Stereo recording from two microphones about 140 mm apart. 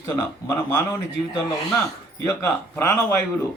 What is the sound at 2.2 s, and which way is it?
Speech, 20° left (ahead or behind).